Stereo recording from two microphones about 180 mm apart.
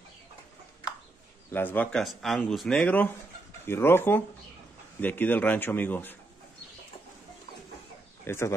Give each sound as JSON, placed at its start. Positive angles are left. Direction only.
{"t": 1.5, "sound": "speech", "side_deg": 10}
{"t": 8.3, "sound": "speech", "side_deg": 15}